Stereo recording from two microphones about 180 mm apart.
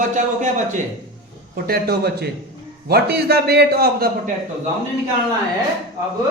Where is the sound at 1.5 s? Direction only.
55° right (ahead or behind).